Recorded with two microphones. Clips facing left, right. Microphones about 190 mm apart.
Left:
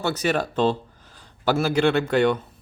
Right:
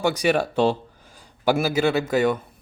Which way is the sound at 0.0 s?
10° right (ahead or behind).